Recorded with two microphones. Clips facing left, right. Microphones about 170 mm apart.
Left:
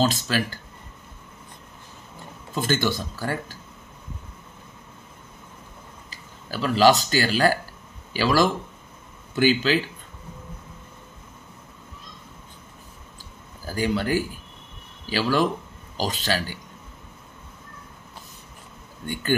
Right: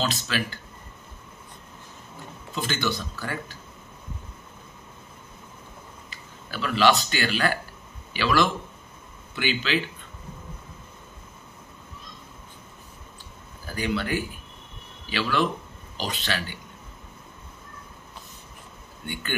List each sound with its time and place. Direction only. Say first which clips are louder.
0.0 s speech: left 5 dB; 45° left (ahead or behind)
2.5 s speech: left 4 dB; 45° left (ahead or behind)
6.0 s speech: left 2 dB; 40° left (ahead or behind)
13.7 s speech: left 3 dB; 40° left (ahead or behind)